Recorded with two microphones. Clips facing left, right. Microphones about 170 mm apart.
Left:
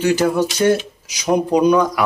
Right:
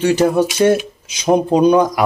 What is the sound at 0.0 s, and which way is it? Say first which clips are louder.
Speech: right 2 dB; 30° right (ahead or behind).